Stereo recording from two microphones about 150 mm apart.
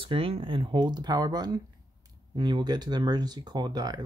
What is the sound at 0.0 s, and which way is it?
Speech, 35° right (ahead or behind).